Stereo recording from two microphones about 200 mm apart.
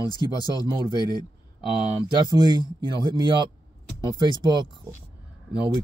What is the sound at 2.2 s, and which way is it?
Speech, 20° right (ahead or behind).